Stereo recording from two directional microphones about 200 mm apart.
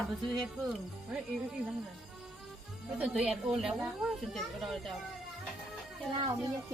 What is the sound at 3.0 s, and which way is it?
Speech, 5° right (ahead or behind).